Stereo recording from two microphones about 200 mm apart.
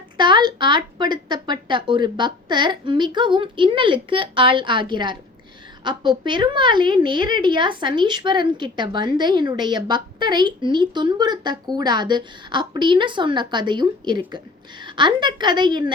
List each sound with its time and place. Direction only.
0.2 s a woman's voice: 25° right (ahead or behind)